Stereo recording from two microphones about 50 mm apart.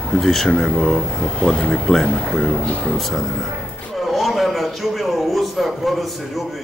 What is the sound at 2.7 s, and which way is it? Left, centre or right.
Speech, left.